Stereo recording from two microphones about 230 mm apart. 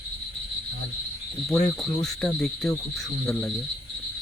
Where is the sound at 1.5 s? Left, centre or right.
Centre.